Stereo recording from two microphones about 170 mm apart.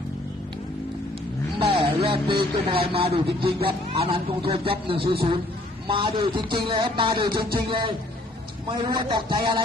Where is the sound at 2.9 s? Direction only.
35° right (ahead or behind).